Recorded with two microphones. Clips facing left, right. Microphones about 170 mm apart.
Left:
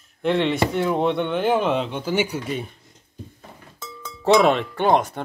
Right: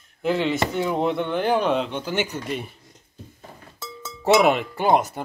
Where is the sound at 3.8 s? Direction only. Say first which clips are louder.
Left 1 dB; 15° right (ahead or behind).